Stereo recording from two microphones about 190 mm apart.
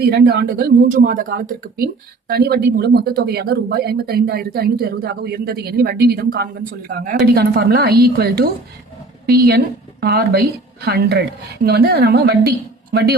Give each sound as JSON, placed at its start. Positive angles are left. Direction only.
{"t": 0.0, "sound": "a woman's voice", "side_deg": -60}